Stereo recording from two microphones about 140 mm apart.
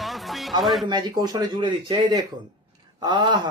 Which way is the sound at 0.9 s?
30° right (ahead or behind).